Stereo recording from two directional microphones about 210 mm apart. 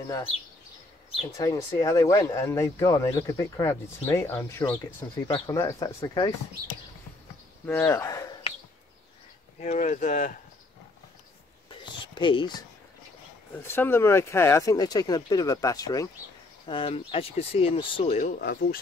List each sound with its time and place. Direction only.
1.3 s speech: 15° left (ahead or behind)
7.6 s speech: 10° left (ahead or behind)
9.6 s speech: 35° left (ahead or behind)
11.7 s a sound: 20° left (ahead or behind)
13.5 s speech: 10° left (ahead or behind); by 18.3 s 30° left (ahead or behind)
18.4 s speech: 45° left (ahead or behind)